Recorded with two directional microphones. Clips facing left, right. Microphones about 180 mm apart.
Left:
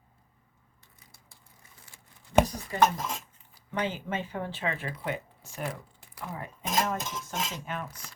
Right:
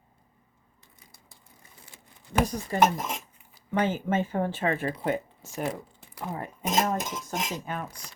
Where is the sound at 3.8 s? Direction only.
45° right (ahead or behind).